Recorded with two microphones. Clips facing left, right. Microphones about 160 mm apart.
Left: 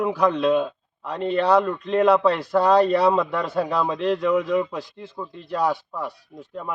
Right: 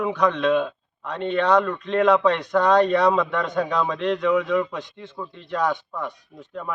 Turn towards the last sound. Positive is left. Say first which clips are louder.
# even
turn(degrees=10)  # may be behind; listen again after turning